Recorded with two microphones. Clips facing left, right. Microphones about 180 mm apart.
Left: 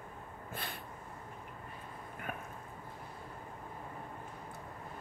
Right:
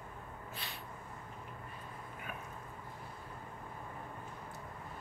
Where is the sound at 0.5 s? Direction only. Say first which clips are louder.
Left 6 dB; 50° left (ahead or behind).